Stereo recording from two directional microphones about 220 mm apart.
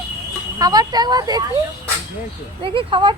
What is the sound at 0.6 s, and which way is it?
Speech, 15° right (ahead or behind).